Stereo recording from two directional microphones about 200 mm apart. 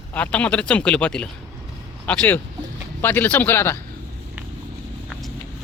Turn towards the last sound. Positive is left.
turn(degrees=10)  # may be behind; listen again after turning